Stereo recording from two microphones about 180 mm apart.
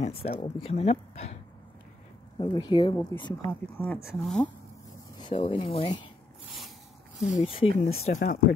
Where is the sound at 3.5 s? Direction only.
10° left (ahead or behind).